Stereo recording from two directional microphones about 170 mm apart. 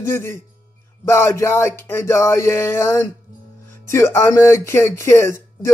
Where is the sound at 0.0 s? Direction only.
15° left (ahead or behind).